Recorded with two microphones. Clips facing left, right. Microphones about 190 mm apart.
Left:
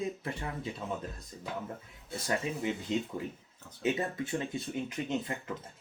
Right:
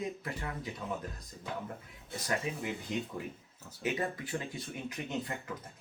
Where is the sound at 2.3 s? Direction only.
25° left (ahead or behind).